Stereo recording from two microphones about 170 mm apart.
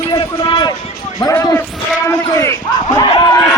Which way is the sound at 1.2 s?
20° left (ahead or behind).